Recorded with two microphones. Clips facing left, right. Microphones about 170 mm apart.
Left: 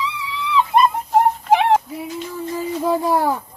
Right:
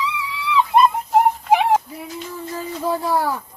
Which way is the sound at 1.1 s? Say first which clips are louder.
Left 1 dB; 5° right (ahead or behind).